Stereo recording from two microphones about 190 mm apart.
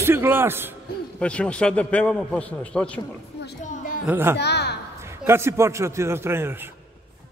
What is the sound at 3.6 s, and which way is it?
Music, 40° left (ahead or behind).